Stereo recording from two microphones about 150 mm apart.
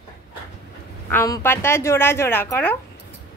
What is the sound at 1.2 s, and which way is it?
A woman's voice, 20° left (ahead or behind).